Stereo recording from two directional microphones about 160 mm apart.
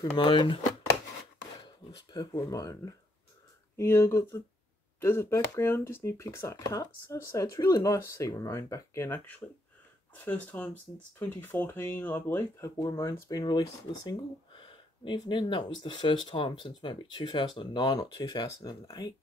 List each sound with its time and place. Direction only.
0.1 s speech: 30° left (ahead or behind)
1.9 s speech: 25° left (ahead or behind)